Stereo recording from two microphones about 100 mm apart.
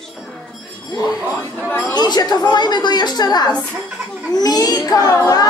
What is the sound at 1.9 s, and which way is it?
A woman's voice, 45° left (ahead or behind).